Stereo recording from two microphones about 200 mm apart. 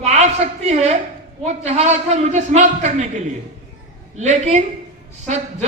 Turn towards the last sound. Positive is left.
turn(degrees=-35)  # may be behind; listen again after turning